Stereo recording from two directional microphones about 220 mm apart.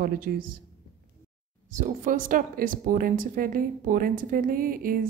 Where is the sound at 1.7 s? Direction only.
35° right (ahead or behind).